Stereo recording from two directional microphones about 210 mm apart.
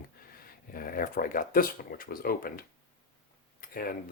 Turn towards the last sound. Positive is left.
turn(degrees=45)  # may be behind; listen again after turning